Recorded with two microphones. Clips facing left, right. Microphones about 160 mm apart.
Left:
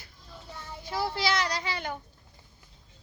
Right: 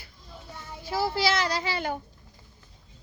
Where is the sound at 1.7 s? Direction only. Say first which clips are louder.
Right 4 dB; 30° right (ahead or behind).